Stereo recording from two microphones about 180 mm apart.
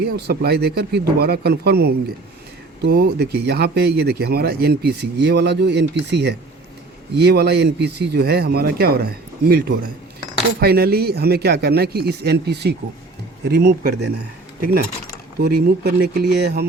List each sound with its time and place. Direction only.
0.3 s speech: 60° right (ahead or behind)